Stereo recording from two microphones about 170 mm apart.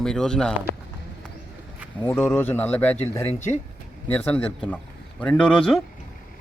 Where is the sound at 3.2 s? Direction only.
40° left (ahead or behind).